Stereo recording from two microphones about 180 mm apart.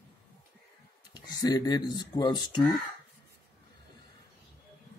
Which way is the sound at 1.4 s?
20° left (ahead or behind).